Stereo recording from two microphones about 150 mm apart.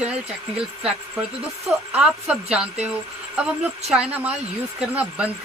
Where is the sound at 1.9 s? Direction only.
5° right (ahead or behind).